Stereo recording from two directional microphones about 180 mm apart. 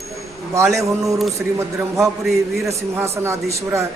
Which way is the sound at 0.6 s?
15° right (ahead or behind).